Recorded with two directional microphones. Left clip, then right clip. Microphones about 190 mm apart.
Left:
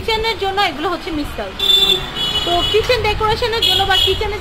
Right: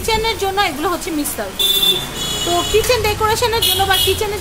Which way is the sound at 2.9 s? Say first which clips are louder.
Even; 20° right (ahead or behind).